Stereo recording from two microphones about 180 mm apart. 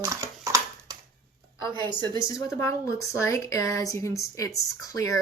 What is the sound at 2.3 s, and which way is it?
Speech, 15° left (ahead or behind).